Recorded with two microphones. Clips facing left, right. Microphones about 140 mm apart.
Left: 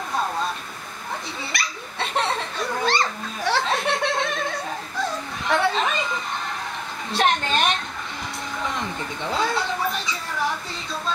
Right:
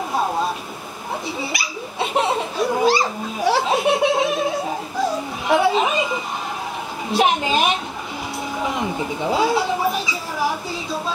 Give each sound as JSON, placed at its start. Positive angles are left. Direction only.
{"t": 1.4, "sound": "laughter", "side_deg": -5}
{"t": 7.1, "sound": "speech", "side_deg": -5}